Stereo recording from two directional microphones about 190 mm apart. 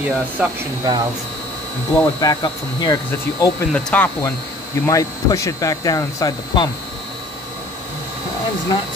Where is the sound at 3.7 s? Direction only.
5° left (ahead or behind).